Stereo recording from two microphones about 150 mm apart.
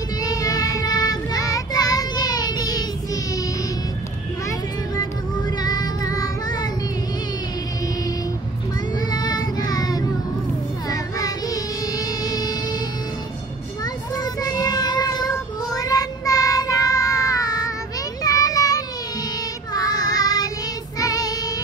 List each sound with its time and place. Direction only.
0.2 s child singing: 25° left (ahead or behind)
4.5 s child singing: 25° left (ahead or behind)
8.9 s child singing: 25° left (ahead or behind)
14.1 s child singing: 25° left (ahead or behind)
18.2 s children playing: 25° left (ahead or behind)
19.7 s child singing: 25° left (ahead or behind)